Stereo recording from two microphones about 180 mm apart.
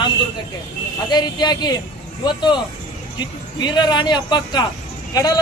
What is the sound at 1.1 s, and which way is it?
A man's voice, 25° left (ahead or behind).